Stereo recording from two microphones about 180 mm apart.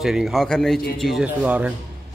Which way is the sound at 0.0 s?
Centre (ahead or behind).